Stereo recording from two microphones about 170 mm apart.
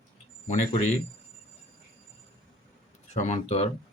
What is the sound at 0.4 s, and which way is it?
Speech, 45° left (ahead or behind).